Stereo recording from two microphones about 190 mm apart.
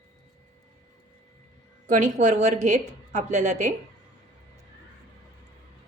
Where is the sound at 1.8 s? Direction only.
40° right (ahead or behind).